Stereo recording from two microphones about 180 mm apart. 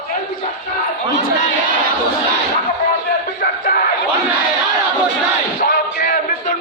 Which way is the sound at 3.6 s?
55° left (ahead or behind).